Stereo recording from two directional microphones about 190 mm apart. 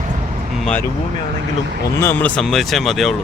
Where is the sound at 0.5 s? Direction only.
5° left (ahead or behind).